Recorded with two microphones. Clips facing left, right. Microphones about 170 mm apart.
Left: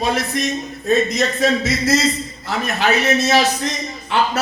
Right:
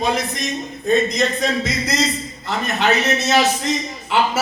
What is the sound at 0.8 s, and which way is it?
A man's voice, centre (ahead or behind).